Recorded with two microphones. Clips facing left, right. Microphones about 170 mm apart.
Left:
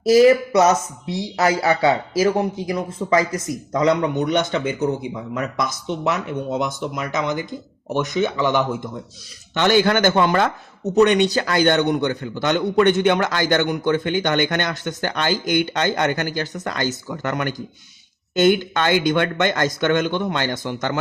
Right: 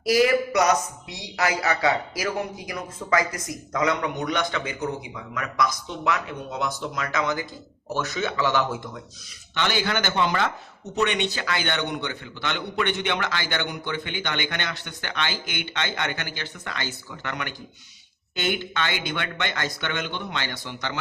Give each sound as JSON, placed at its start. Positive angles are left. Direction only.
{"t": 0.0, "sound": "speech", "side_deg": 25}
{"t": 9.6, "sound": "a man's voice", "side_deg": 50}